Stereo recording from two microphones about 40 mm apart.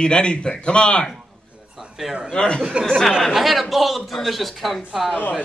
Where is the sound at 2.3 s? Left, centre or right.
Left.